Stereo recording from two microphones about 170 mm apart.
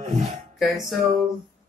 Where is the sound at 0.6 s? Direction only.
Centre (ahead or behind).